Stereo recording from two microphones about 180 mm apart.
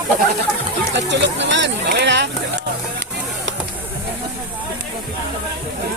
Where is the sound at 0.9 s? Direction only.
80° right.